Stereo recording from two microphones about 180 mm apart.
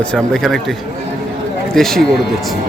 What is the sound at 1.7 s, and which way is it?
Speech, 5° left (ahead or behind).